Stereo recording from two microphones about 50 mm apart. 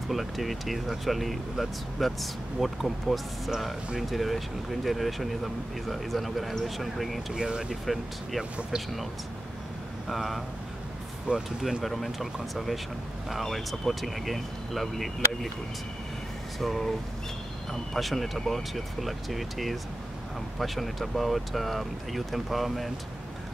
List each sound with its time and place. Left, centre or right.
0.1 s speech: centre
7.3 s speech: centre
7.8 s speech: centre
10.0 s speech: centre
11.3 s speech: right
11.8 s speech: centre
16.5 s speech: centre
17.9 s speech: centre